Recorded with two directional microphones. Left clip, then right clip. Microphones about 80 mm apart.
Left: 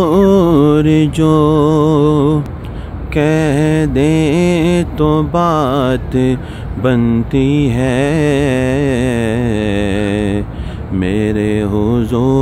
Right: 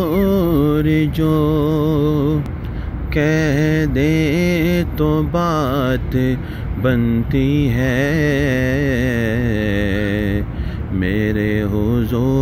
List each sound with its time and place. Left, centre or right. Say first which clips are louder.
0.0 s music: left 7 dB; left
3.2 s mantra: left 4 dB; left